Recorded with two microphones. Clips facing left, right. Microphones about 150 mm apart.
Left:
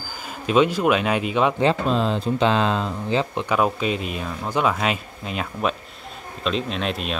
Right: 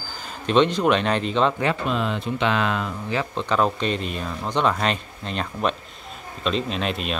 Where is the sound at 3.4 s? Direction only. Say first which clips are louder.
Left 1 dB; 10° left (ahead or behind).